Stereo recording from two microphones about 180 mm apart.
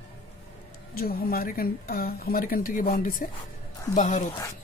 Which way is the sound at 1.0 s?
55° left (ahead or behind).